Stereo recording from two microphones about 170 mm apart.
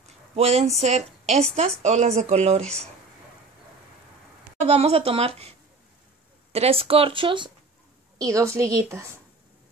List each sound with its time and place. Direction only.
0.4 s a woman's voice: 40° right (ahead or behind)
4.6 s a woman's voice: 35° right (ahead or behind)
6.5 s a woman's voice: 35° right (ahead or behind)
8.2 s a woman's voice: 20° right (ahead or behind)